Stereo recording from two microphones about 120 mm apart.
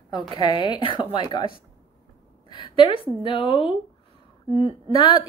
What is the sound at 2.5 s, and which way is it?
A woman's voice, 45° left (ahead or behind).